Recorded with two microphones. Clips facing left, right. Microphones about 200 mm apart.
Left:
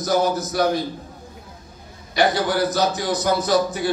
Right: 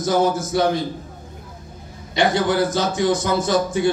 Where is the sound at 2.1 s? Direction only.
25° right (ahead or behind).